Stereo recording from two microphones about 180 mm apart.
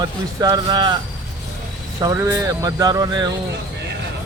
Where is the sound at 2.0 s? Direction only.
15° right (ahead or behind).